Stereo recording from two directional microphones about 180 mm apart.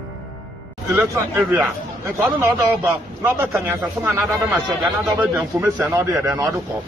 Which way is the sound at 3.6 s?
10° right (ahead or behind).